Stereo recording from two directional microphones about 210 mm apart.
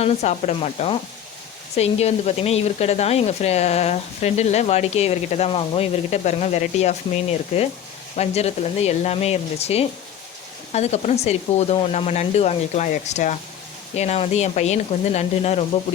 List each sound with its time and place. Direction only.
0.0 s speech: 30° left (ahead or behind)